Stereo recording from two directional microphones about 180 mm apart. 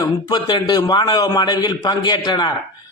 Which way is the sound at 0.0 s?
20° left (ahead or behind).